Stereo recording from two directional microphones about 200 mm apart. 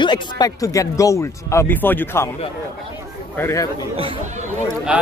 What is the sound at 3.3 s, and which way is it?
Speech, 15° left (ahead or behind).